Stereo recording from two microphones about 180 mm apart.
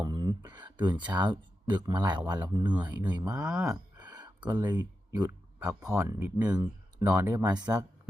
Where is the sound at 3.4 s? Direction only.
5° right (ahead or behind).